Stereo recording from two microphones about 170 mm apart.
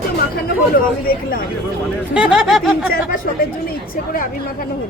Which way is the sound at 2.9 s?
60° left (ahead or behind).